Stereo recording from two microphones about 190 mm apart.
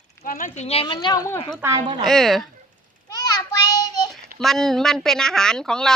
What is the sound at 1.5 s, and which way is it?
Speech, 15° right (ahead or behind).